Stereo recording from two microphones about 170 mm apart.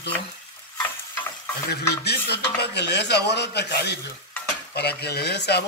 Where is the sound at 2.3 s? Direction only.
75° left (ahead or behind).